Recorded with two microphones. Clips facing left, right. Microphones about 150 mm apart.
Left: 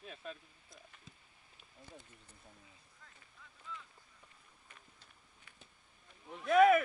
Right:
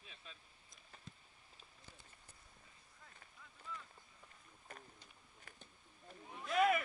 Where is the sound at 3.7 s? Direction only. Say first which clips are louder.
Left 1 dB; 5° right (ahead or behind).